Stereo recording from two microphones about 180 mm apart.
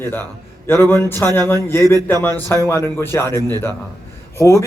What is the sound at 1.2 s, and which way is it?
A man's voice, 10° left (ahead or behind).